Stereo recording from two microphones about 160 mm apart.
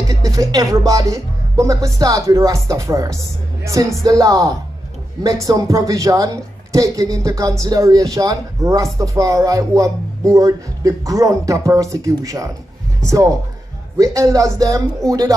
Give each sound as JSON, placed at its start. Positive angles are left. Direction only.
{"t": 0.1, "sound": "speech", "side_deg": -20}